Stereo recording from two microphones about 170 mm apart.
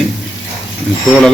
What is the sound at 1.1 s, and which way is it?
Speech, 5° left (ahead or behind).